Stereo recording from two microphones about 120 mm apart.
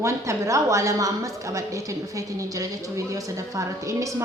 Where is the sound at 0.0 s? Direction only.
25° right (ahead or behind).